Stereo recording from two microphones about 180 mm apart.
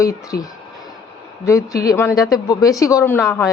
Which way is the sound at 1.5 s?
20° left (ahead or behind).